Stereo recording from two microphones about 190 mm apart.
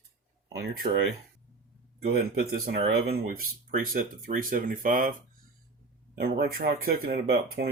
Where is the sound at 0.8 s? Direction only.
40° right (ahead or behind).